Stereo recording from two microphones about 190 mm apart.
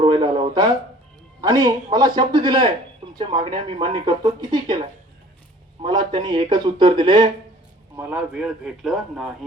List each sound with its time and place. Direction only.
0.0 s a sound: 25° right (ahead or behind)
1.4 s speech: 20° right (ahead or behind)
7.9 s a man's voice: 5° right (ahead or behind)